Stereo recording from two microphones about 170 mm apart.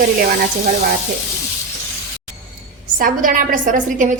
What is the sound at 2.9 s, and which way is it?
A woman's voice, 55° right (ahead or behind).